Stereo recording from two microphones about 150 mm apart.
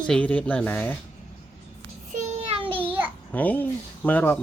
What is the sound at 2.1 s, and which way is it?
Child singing, 50° right (ahead or behind).